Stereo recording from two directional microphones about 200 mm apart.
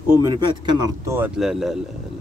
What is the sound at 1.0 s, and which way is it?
Speech, 10° right (ahead or behind).